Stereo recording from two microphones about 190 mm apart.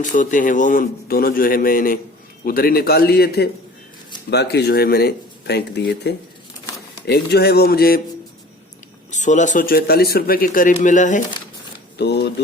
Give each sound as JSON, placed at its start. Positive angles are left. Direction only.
{"t": 0.0, "sound": "speech", "side_deg": 40}
{"t": 9.0, "sound": "speech", "side_deg": 40}
{"t": 11.9, "sound": "speech", "side_deg": 60}